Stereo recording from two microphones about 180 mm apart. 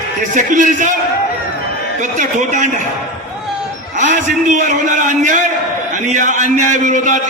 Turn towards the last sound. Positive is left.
turn(degrees=-45)  # may be behind; listen again after turning